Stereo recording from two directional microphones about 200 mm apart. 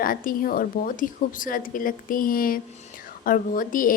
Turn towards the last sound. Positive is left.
turn(degrees=45)  # may be behind; listen again after turning